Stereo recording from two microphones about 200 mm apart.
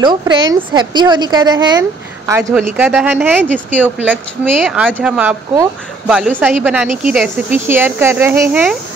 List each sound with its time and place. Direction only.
0.0 s a woman's voice: 20° right (ahead or behind); by 8.7 s 5° right (ahead or behind)